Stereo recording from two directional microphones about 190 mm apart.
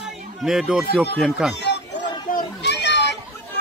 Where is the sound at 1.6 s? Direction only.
65° left (ahead or behind).